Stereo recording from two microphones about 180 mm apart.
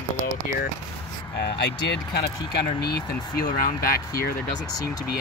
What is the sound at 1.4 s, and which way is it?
Speech, 65° left (ahead or behind).